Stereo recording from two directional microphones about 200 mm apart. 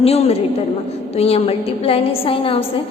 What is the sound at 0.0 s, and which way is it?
A woman's voice, 30° left (ahead or behind).